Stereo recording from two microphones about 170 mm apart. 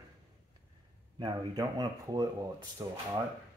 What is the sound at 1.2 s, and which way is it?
Speech, 25° right (ahead or behind).